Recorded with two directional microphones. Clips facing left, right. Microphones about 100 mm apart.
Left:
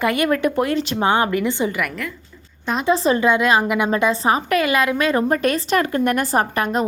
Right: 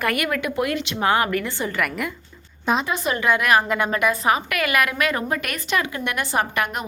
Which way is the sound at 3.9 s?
25° left (ahead or behind).